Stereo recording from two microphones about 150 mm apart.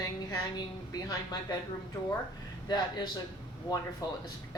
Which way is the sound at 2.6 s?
30° left (ahead or behind).